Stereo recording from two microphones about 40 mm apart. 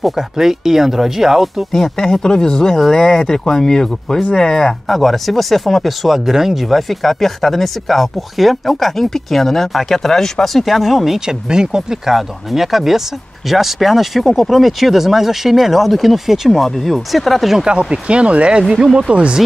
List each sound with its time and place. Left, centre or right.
0.0 s speech: centre
1.7 s speech: centre
6.0 s speech: centre
11.2 s speech: centre
12.1 s speech: centre
17.6 s speech: right
18.6 s speech: centre
19.1 s speech: right